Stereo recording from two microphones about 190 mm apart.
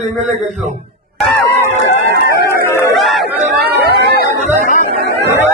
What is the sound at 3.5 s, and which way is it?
Chatter, 55° right (ahead or behind).